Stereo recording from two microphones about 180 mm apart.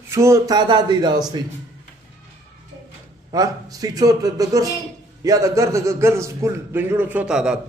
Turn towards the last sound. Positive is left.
turn(degrees=-5)  # may be behind; listen again after turning